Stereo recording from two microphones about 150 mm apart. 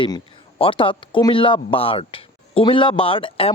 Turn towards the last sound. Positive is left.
turn(degrees=40)  # may be behind; listen again after turning